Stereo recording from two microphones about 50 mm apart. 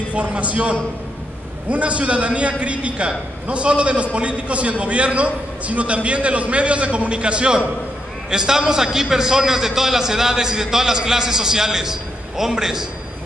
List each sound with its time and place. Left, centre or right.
0.1 s a man's voice: right; by 12.8 s centre